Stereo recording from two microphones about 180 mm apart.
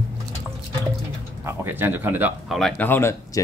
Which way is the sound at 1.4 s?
10° right (ahead or behind).